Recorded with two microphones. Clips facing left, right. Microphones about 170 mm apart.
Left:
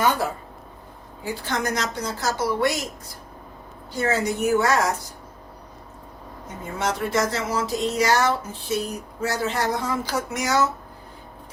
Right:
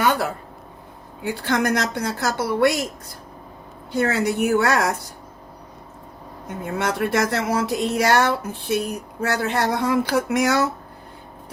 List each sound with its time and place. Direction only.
1.2 s speech: 65° right (ahead or behind)
3.9 s speech: 65° right (ahead or behind)
6.7 s speech: 60° right (ahead or behind)